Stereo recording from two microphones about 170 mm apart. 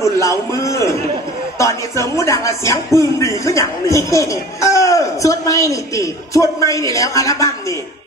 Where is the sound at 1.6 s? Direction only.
15° left (ahead or behind).